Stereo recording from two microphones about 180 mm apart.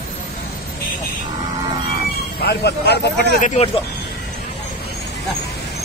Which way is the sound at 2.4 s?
65° left (ahead or behind).